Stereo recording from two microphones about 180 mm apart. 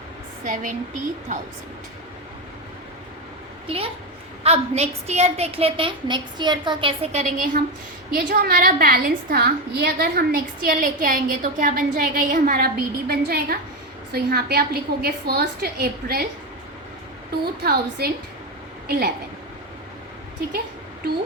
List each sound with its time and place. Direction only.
0.4 s a woman's voice: 45° right (ahead or behind)
3.7 s a woman's voice: 30° right (ahead or behind); by 16.2 s 60° right (ahead or behind)
17.4 s a woman's voice: 60° right (ahead or behind)